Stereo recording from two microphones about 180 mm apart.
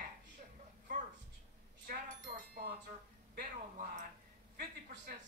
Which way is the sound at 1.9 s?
55° right (ahead or behind).